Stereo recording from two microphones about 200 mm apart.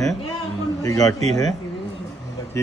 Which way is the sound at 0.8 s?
15° left (ahead or behind).